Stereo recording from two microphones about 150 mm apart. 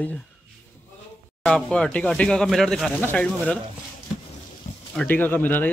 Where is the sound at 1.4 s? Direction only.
5° left (ahead or behind).